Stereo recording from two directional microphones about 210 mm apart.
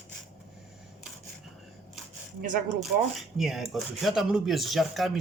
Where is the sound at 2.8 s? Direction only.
Centre (ahead or behind).